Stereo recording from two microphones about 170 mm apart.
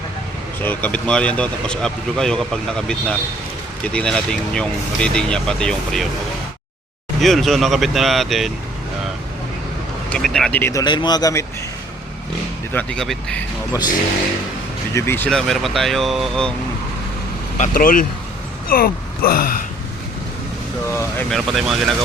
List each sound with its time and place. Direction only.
0.6 s speech: 10° left (ahead or behind)
7.2 s speech: centre (ahead or behind)
10.1 s speech: 5° left (ahead or behind); by 11.4 s 20° left (ahead or behind)
12.7 s speech: 5° left (ahead or behind)
14.9 s speech: 15° left (ahead or behind)
15.3 s speech: centre (ahead or behind)
17.6 s speech: 55° left (ahead or behind)
20.9 s speech: 15° left (ahead or behind)
21.2 s speech: centre (ahead or behind)